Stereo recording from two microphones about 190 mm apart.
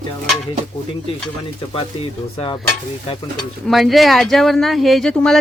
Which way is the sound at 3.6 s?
Centre (ahead or behind).